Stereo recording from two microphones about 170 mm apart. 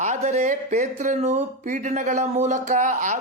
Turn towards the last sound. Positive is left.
turn(degrees=-45)  # may be behind; listen again after turning